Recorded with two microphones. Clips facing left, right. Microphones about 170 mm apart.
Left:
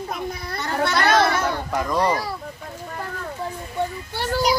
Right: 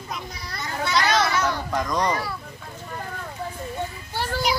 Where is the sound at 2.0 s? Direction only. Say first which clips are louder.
Left 3 dB; 35° left (ahead or behind).